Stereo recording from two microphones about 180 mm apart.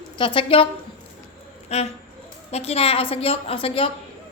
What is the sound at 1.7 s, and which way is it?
A woman's voice, 35° left (ahead or behind).